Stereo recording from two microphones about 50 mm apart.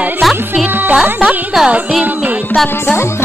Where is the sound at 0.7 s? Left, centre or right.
Right.